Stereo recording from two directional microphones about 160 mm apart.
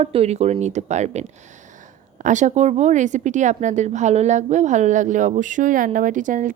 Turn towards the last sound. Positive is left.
turn(degrees=-55)  # may be behind; listen again after turning